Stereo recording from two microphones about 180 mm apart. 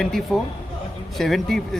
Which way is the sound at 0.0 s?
Centre (ahead or behind).